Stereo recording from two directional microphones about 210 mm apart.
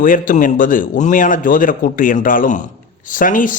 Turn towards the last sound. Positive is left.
turn(degrees=40)  # may be behind; listen again after turning